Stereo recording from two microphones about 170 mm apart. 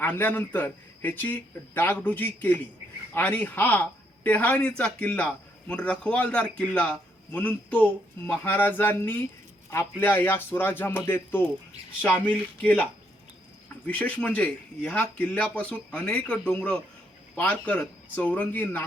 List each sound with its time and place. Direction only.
0.0 s a man's voice: 10° left (ahead or behind)
13.8 s a man's voice: 10° left (ahead or behind)